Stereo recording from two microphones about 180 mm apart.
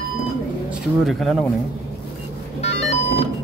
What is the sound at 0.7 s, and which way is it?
Speech, centre (ahead or behind).